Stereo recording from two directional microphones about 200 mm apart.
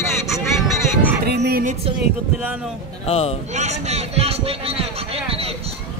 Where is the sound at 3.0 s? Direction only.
30° left (ahead or behind).